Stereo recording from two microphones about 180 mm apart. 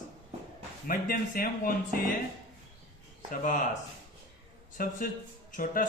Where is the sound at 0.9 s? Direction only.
50° left (ahead or behind).